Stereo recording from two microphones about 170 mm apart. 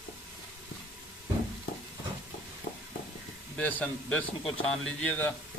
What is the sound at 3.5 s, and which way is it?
A man's voice, 10° left (ahead or behind).